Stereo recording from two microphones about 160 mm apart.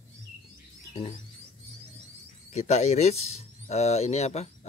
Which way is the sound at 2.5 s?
45° left (ahead or behind).